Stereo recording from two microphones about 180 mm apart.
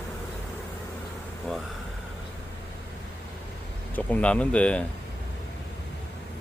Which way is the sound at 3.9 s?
10° left (ahead or behind).